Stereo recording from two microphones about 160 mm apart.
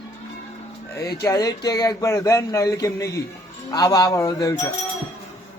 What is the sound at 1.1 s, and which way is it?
Speech, 20° left (ahead or behind).